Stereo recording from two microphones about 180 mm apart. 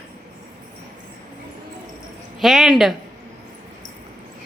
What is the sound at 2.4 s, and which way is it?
Speech, centre (ahead or behind).